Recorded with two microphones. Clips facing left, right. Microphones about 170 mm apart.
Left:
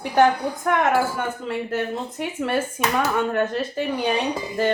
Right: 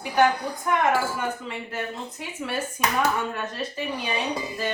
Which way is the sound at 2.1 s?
65° left (ahead or behind).